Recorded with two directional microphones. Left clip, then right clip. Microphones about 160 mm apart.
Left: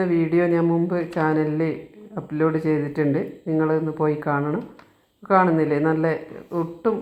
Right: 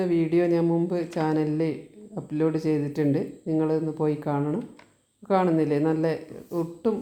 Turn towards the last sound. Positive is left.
turn(degrees=-10)  # may be behind; listen again after turning